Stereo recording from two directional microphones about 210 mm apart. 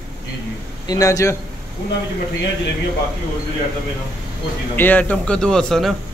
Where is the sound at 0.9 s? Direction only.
15° left (ahead or behind).